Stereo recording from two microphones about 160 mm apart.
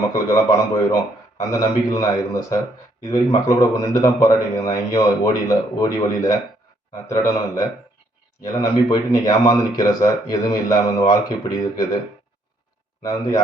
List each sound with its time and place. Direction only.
0.1 s a man's voice: 20° left (ahead or behind)
13.0 s a man's voice: 25° left (ahead or behind)